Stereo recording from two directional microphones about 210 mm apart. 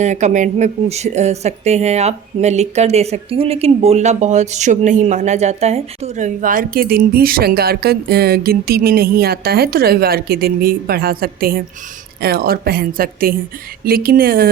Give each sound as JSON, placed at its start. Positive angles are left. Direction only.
{"t": 0.0, "sound": "a woman's voice", "side_deg": -35}